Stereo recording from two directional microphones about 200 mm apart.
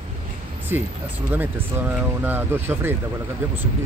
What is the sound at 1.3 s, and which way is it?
Speech, 10° right (ahead or behind).